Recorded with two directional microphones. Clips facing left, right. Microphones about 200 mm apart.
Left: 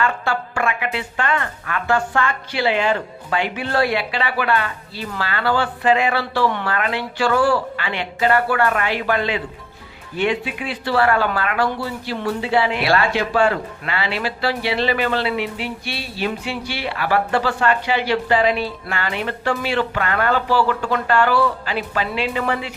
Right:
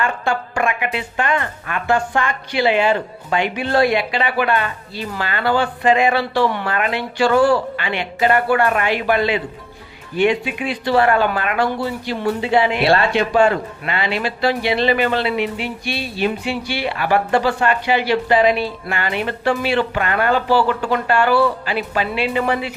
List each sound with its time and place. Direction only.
0.0 s a woman's voice: 20° right (ahead or behind)